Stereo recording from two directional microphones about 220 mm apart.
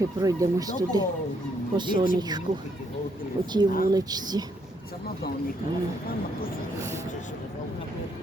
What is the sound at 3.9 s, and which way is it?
Speech, 20° right (ahead or behind).